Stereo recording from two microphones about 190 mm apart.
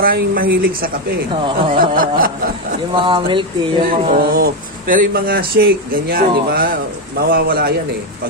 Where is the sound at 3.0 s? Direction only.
25° right (ahead or behind).